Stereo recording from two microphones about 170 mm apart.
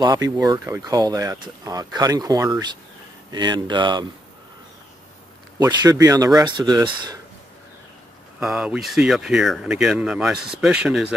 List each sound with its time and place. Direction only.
0.0 s speech: 25° right (ahead or behind)
5.6 s speech: 20° right (ahead or behind)
8.4 s speech: 5° right (ahead or behind)